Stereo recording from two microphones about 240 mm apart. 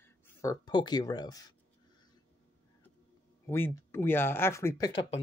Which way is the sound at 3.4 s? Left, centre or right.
Centre.